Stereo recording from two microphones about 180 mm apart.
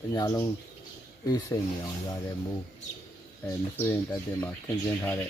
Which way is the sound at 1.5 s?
20° left (ahead or behind).